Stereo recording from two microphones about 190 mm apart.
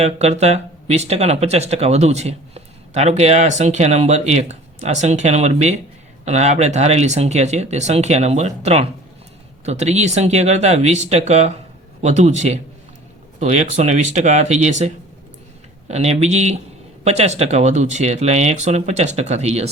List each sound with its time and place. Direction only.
0.0 s speech: 35° right (ahead or behind)